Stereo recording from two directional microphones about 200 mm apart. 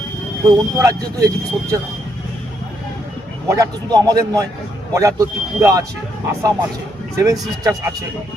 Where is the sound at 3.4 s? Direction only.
15° right (ahead or behind).